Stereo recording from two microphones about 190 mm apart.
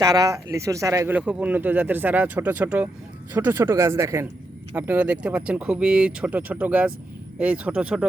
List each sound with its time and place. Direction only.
0.0 s speech: 20° right (ahead or behind)